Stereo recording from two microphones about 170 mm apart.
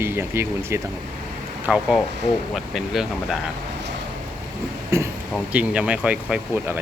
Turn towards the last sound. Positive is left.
turn(degrees=-10)  # may be behind; listen again after turning